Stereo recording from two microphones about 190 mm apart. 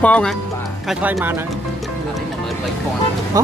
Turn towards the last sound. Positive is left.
turn(degrees=-20)  # may be behind; listen again after turning